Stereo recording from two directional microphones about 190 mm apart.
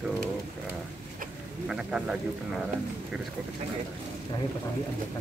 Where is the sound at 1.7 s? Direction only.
5° right (ahead or behind).